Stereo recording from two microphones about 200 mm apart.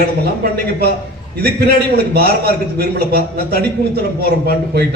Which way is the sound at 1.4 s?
50° right (ahead or behind).